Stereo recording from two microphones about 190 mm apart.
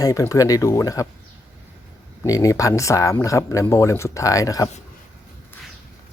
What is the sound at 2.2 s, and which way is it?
Speech, 20° left (ahead or behind).